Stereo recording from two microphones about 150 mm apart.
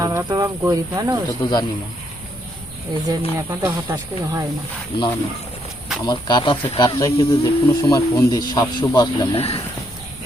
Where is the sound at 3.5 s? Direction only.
15° right (ahead or behind).